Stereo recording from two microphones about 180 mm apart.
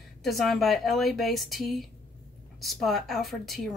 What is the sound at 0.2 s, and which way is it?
A woman's voice, centre (ahead or behind).